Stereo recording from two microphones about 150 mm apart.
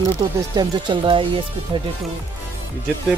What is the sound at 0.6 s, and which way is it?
Speech, 35° right (ahead or behind).